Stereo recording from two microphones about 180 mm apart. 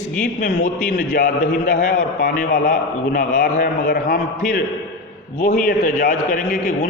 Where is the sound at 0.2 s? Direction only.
50° left (ahead or behind).